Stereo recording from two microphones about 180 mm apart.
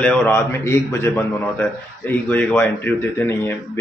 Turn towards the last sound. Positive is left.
turn(degrees=10)  # may be behind; listen again after turning